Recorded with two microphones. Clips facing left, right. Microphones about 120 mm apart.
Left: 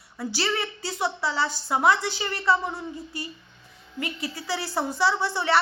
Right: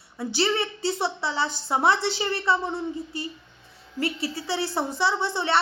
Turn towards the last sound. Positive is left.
turn(degrees=-25)  # may be behind; listen again after turning